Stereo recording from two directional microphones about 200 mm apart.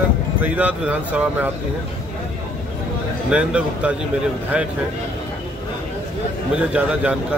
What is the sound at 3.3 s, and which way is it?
Speech, 5° right (ahead or behind).